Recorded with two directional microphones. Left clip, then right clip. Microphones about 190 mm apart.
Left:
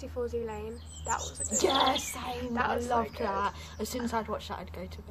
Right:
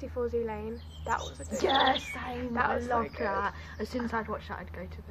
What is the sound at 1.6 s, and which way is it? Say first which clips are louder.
Speech: right 1 dB; 20° left (ahead or behind).